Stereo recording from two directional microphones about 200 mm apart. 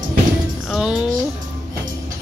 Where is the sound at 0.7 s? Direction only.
5° right (ahead or behind).